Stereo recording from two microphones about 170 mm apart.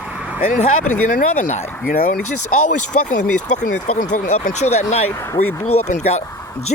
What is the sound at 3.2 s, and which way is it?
Speech, 50° left (ahead or behind).